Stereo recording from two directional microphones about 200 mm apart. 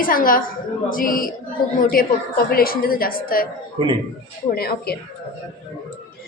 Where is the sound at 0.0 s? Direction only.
45° left (ahead or behind).